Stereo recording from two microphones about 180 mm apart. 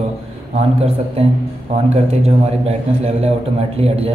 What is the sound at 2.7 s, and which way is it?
A man's voice, 35° right (ahead or behind).